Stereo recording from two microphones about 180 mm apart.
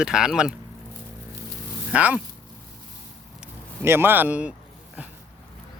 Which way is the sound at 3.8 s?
15° right (ahead or behind).